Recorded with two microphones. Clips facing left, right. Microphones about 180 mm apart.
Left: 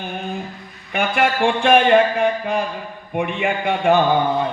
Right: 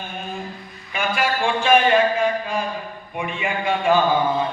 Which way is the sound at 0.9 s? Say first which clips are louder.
Left 4 dB; 65° left (ahead or behind).